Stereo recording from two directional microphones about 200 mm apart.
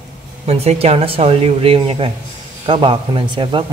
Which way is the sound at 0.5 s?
30° right (ahead or behind).